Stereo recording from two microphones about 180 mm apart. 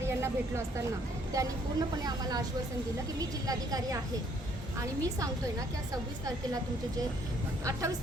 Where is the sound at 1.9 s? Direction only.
20° right (ahead or behind).